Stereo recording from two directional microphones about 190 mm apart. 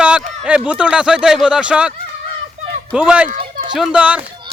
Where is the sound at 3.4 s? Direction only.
30° right (ahead or behind).